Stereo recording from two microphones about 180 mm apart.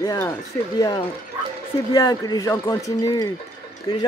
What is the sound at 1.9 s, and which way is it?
Speech, 20° left (ahead or behind).